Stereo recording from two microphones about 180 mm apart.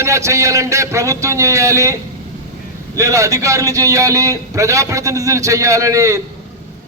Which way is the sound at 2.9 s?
15° right (ahead or behind).